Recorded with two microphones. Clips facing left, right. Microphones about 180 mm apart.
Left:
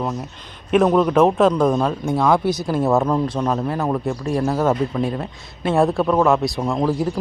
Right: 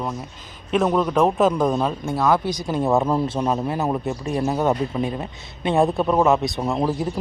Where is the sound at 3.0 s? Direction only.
5° right (ahead or behind).